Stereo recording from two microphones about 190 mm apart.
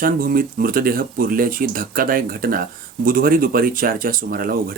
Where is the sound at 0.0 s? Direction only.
50° right (ahead or behind).